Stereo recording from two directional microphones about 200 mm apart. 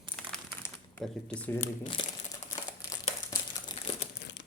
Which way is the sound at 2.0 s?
25° left (ahead or behind).